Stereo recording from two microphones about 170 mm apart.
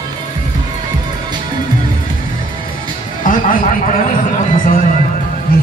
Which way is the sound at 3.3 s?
55° left (ahead or behind).